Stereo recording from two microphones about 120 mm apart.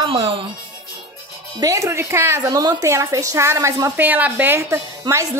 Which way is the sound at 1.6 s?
25° right (ahead or behind).